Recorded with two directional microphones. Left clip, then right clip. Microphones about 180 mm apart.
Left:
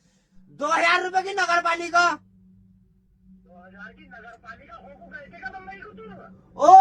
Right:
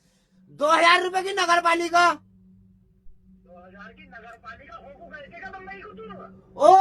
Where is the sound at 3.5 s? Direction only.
20° right (ahead or behind).